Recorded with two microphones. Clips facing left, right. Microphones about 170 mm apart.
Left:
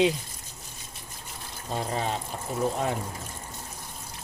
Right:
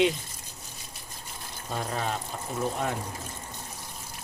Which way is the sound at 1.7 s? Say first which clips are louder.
Left 2 dB; 25° left (ahead or behind).